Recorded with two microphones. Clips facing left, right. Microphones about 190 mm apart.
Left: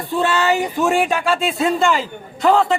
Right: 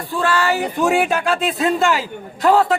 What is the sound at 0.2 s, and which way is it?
Speech, 20° left (ahead or behind).